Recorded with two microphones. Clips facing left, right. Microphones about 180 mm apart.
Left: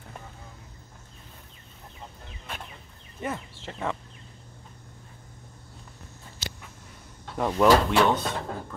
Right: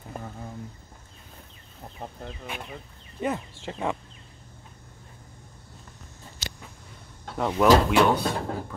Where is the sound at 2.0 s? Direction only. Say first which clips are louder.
Right 7 dB; 55° right (ahead or behind).